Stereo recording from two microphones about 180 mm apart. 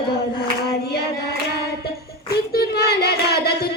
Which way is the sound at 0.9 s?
65° left (ahead or behind).